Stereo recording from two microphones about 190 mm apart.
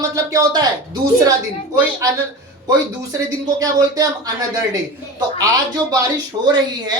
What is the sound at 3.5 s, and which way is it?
Speech, 20° right (ahead or behind).